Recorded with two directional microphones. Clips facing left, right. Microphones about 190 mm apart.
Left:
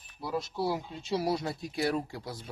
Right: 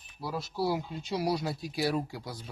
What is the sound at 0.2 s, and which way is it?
Speech, centre (ahead or behind).